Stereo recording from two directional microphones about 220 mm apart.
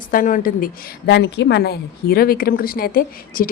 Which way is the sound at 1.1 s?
55° left (ahead or behind).